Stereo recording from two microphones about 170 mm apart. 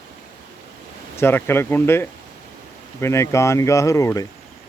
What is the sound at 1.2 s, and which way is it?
Speech, 15° left (ahead or behind).